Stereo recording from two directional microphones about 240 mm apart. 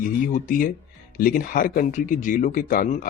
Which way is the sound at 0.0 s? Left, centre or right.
Left.